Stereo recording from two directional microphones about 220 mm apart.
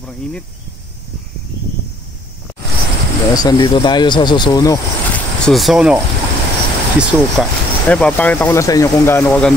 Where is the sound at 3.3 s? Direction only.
15° left (ahead or behind).